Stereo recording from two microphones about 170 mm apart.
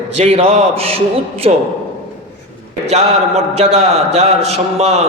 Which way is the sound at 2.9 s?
40° right (ahead or behind).